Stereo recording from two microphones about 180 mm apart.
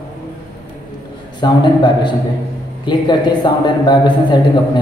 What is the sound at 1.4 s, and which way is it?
A man's voice, 25° left (ahead or behind).